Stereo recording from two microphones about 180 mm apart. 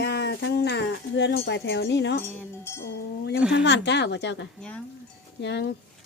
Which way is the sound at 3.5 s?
75° left (ahead or behind).